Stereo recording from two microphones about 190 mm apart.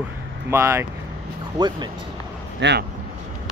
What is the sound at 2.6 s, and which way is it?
Speech, 65° right (ahead or behind).